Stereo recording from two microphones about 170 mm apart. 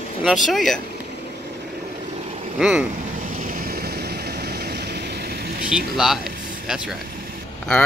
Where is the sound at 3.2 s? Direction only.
50° right (ahead or behind).